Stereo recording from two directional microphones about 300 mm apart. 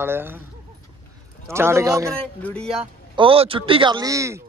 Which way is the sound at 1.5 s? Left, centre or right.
Centre.